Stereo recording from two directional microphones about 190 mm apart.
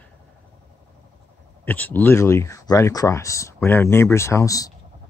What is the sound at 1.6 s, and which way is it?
Speech, 10° left (ahead or behind).